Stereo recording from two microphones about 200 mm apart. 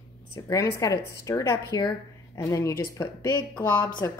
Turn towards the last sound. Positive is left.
turn(degrees=20)  # may be behind; listen again after turning